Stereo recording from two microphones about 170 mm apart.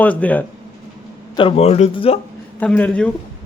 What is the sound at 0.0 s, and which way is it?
Speech, 10° left (ahead or behind).